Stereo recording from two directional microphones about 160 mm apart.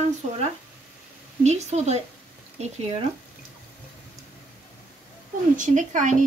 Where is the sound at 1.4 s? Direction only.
45° right (ahead or behind).